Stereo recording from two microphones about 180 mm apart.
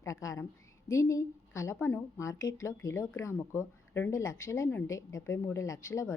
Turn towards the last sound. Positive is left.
turn(degrees=15)  # may be behind; listen again after turning